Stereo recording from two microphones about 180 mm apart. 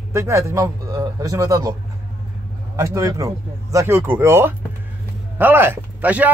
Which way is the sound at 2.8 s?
15° right (ahead or behind).